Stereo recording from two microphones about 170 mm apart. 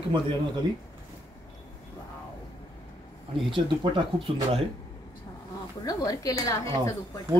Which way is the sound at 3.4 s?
30° right (ahead or behind).